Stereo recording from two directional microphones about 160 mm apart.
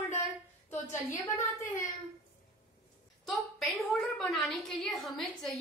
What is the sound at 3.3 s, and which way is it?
A woman's voice, centre (ahead or behind).